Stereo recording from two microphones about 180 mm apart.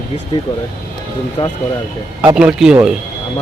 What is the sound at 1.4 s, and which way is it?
Speech, 30° left (ahead or behind).